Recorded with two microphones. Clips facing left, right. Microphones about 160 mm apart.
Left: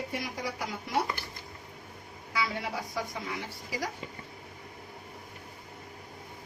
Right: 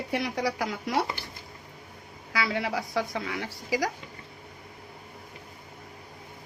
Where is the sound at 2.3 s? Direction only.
90° right.